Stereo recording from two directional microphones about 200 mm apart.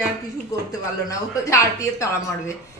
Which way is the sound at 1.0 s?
15° left (ahead or behind).